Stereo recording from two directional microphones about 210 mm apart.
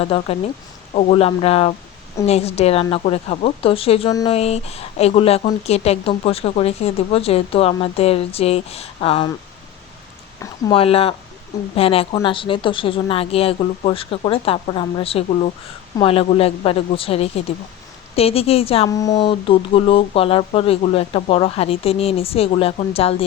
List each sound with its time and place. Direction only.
0.0 s speech: 25° left (ahead or behind)
10.4 s speech: 25° left (ahead or behind)
18.9 s speech: 15° left (ahead or behind)